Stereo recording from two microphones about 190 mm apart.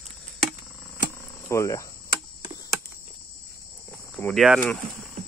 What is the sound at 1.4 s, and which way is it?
Speech, 15° left (ahead or behind).